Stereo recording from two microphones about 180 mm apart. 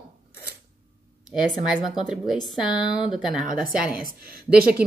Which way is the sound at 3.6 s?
55° right (ahead or behind).